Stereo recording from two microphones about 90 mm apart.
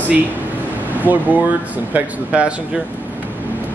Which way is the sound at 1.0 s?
20° right (ahead or behind).